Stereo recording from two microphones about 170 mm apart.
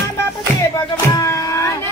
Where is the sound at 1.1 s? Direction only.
15° left (ahead or behind).